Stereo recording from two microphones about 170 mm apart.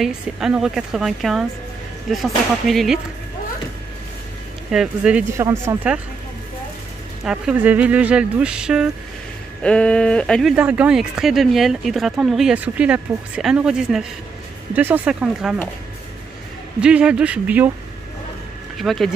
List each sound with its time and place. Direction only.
0.0 s speech: 5° right (ahead or behind)
4.6 s speech: 5° right (ahead or behind)
5.4 s speech: 15° right (ahead or behind)
7.2 s speech: 5° right (ahead or behind)
9.6 s speech: 5° left (ahead or behind)
10.5 s speech: 5° right (ahead or behind)
16.8 s speech: 5° right (ahead or behind)
18.8 s speech: centre (ahead or behind)